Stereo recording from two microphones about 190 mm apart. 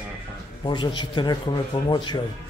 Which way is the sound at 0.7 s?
25° left (ahead or behind).